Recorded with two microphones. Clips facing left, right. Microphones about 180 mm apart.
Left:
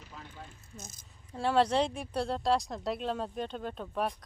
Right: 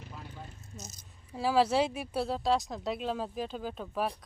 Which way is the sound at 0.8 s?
50° left (ahead or behind).